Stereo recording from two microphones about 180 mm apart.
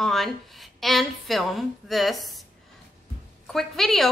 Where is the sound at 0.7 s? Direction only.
Centre (ahead or behind).